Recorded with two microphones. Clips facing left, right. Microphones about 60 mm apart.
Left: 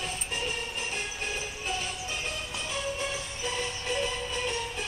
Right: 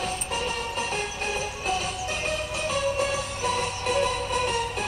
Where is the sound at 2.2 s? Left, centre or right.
Right.